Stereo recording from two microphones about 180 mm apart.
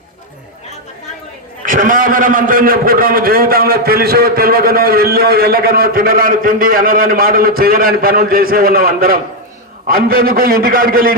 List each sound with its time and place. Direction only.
1.6 s a man's voice: 50° right (ahead or behind)